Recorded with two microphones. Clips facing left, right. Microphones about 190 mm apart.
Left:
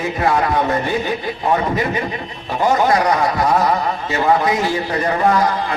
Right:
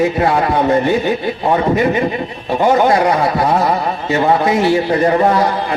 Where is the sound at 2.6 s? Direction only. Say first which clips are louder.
Right 3 dB; 25° right (ahead or behind).